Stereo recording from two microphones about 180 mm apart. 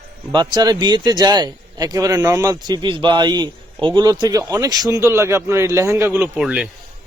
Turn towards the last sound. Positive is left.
turn(degrees=-5)  # may be behind; listen again after turning